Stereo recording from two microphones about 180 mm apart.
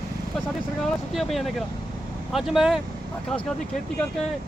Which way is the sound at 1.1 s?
Centre (ahead or behind).